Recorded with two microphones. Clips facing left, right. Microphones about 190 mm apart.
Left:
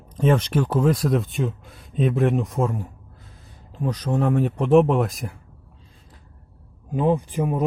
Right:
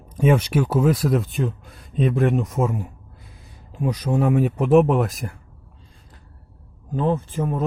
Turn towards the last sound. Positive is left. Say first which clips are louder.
# left 1 dB
turn(degrees=15)  # may be behind; listen again after turning